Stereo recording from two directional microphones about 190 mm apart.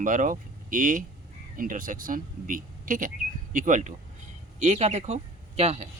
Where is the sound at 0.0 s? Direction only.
45° right (ahead or behind).